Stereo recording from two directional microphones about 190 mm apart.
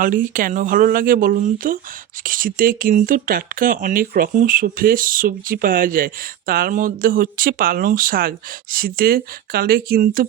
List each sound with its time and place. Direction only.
0.0 s speech: 45° right (ahead or behind)